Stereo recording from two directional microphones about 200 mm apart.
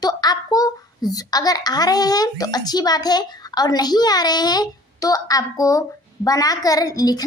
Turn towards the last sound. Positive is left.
turn(degrees=20)  # may be behind; listen again after turning